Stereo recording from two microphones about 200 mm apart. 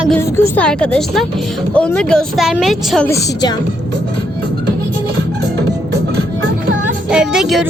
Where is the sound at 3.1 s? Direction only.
15° left (ahead or behind).